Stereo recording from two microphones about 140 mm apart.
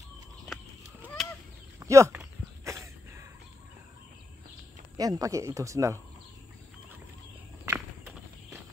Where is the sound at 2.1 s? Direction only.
20° right (ahead or behind).